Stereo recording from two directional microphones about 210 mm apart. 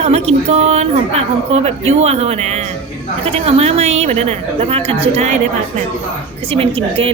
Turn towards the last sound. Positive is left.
turn(degrees=-25)  # may be behind; listen again after turning